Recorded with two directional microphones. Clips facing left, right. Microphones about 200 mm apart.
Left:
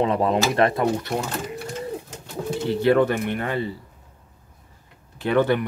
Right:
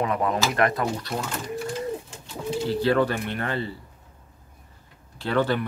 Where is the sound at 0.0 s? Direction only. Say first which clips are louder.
Left 4 dB; 25° left (ahead or behind).